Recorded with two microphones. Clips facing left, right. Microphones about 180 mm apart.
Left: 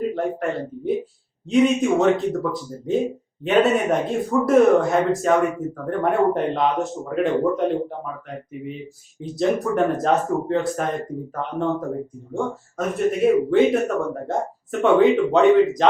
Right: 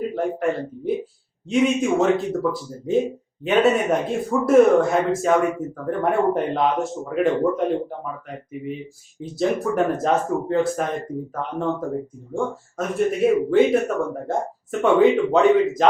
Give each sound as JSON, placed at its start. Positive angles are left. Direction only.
{"t": 0.0, "sound": "speech", "side_deg": 0}
{"t": 9.2, "sound": "speech", "side_deg": 0}